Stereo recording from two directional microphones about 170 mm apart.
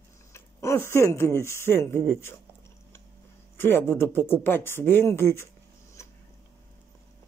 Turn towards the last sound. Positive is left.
turn(degrees=15)  # may be behind; listen again after turning